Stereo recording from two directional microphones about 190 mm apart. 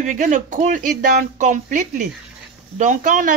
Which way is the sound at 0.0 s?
40° right (ahead or behind).